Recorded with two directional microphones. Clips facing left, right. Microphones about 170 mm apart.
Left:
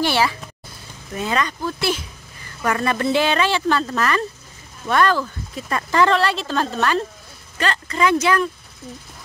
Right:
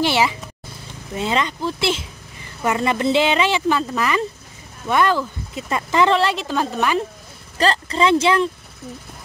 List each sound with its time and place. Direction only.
0.0 s speech: 20° right (ahead or behind)
7.5 s speech: 35° right (ahead or behind)